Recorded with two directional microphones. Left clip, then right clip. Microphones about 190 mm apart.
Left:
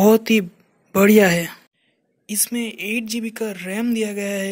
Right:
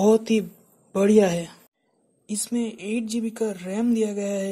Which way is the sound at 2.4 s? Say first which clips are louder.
Left 2 dB; 5° left (ahead or behind).